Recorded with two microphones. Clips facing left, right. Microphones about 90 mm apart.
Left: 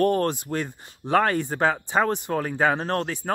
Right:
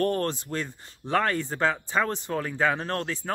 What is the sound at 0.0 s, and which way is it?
Speech, 10° left (ahead or behind).